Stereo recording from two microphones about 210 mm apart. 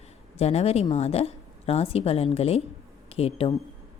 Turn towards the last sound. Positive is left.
turn(degrees=30)  # may be behind; listen again after turning